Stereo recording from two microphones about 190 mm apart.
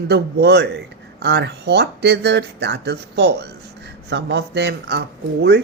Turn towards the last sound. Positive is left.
turn(degrees=-60)  # may be behind; listen again after turning